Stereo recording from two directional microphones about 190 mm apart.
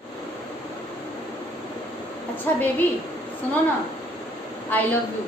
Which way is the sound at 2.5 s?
10° left (ahead or behind).